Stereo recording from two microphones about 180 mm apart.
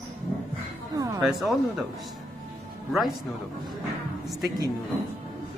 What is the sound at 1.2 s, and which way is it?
Speech, centre (ahead or behind).